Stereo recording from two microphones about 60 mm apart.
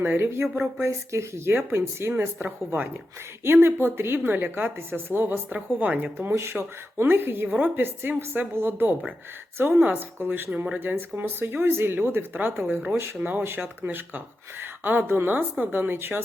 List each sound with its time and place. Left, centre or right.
0.0 s speech: right
0.9 s speech: right
10.5 s speech: right
10.8 s speech: right